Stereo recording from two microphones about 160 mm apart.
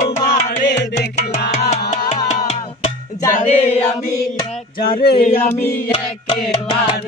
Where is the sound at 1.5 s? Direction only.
45° left (ahead or behind).